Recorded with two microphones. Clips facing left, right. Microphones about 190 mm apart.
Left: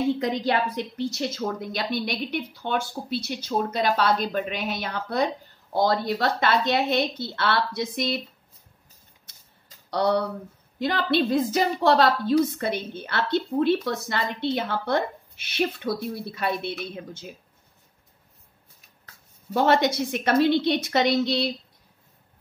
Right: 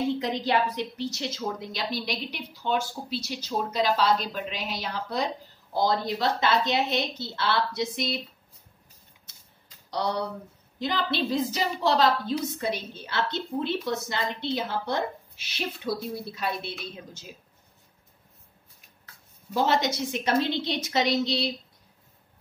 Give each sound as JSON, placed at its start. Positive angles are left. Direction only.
{"t": 0.2, "sound": "a woman's voice", "side_deg": 50}
{"t": 9.8, "sound": "a woman's voice", "side_deg": 60}
{"t": 19.5, "sound": "a woman's voice", "side_deg": 60}